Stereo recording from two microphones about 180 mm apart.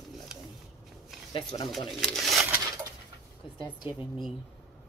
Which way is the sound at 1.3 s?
30° left (ahead or behind).